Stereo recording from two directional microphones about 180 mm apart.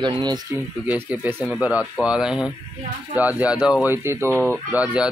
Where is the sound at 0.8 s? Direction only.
10° right (ahead or behind).